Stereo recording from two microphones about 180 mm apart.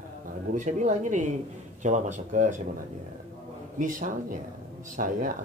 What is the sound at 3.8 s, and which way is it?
Speech, 45° right (ahead or behind).